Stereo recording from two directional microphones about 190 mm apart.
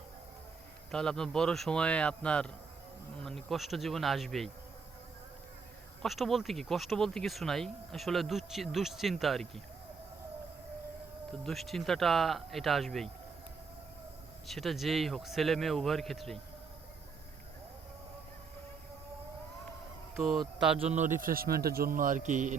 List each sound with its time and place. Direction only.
0.9 s speech: 5° left (ahead or behind)
6.0 s speech: centre (ahead or behind)
11.3 s speech: centre (ahead or behind)
14.4 s speech: centre (ahead or behind)
20.1 s speech: centre (ahead or behind)
20.7 s a man's voice: 35° right (ahead or behind)